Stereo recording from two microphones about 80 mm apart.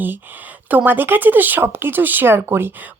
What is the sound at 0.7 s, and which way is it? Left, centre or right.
Speech, right.